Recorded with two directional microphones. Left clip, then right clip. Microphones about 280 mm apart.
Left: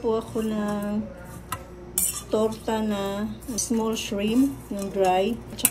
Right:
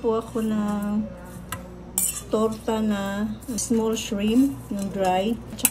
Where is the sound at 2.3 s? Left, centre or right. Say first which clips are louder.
Right 1 dB; right.